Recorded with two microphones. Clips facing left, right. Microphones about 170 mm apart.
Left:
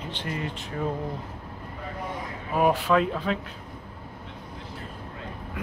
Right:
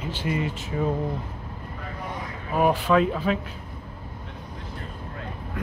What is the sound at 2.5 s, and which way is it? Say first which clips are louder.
Speech: right 1 dB; centre (ahead or behind).